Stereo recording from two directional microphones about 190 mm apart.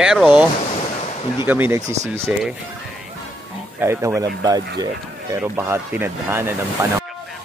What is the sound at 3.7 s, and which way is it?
Speech, 15° right (ahead or behind).